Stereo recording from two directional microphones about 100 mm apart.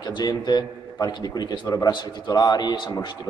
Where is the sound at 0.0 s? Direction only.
40° left (ahead or behind).